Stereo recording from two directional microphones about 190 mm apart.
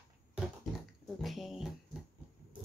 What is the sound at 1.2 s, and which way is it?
Music, centre (ahead or behind).